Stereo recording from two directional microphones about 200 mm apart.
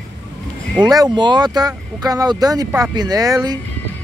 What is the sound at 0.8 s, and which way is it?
Speech, 20° right (ahead or behind).